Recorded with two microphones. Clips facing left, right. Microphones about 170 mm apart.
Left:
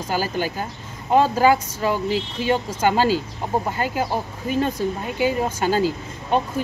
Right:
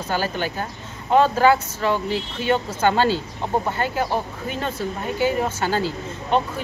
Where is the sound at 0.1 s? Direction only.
10° left (ahead or behind).